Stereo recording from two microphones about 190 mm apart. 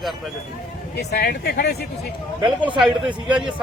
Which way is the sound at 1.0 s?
60° left (ahead or behind).